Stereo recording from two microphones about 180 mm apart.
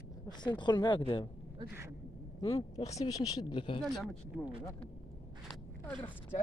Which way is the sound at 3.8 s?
Centre (ahead or behind).